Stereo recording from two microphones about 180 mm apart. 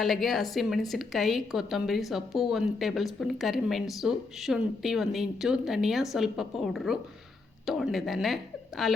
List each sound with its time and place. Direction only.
0.0 s a woman's voice: centre (ahead or behind)